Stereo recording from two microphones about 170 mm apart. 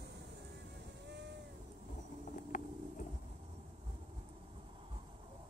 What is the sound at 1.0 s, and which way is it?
Cat, 90° right.